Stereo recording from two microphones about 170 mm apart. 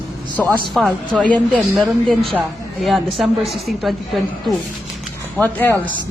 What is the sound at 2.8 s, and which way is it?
A woman's voice, centre (ahead or behind).